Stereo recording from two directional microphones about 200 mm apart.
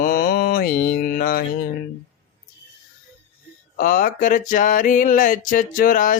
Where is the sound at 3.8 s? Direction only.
45° left (ahead or behind).